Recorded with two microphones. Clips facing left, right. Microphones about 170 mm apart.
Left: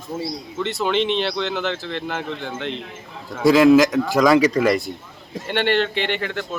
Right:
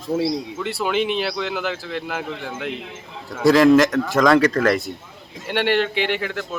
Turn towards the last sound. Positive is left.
turn(degrees=-5)  # may be behind; listen again after turning